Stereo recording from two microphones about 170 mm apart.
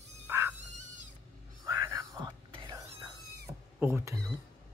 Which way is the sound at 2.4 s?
30° right (ahead or behind).